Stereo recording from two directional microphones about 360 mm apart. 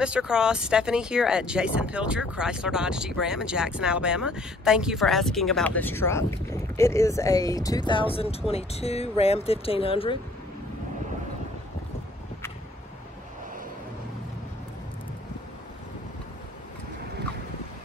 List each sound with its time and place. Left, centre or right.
0.0 s speech: centre